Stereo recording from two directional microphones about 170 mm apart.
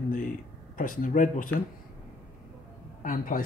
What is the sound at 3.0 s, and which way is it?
Speech, 55° left (ahead or behind).